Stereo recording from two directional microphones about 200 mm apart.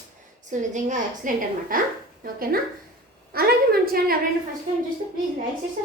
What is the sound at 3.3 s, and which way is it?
Speech, 50° right (ahead or behind).